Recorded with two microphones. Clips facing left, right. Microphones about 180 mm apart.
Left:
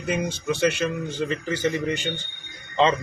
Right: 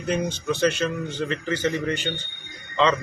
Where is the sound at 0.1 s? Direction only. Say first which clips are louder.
Right 1 dB; 10° left (ahead or behind).